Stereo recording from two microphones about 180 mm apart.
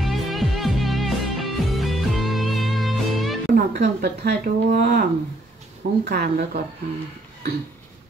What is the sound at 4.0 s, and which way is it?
Speech, 65° right (ahead or behind).